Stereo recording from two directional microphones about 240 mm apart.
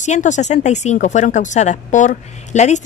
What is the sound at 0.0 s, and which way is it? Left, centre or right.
Speech, left.